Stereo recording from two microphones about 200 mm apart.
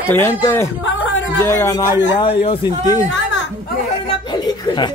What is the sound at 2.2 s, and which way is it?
Speech, 25° left (ahead or behind).